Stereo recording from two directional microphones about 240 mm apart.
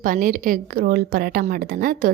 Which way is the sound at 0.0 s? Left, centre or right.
Right.